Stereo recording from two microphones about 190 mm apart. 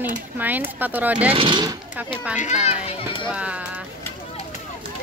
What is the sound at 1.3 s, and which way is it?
Speech, 25° right (ahead or behind).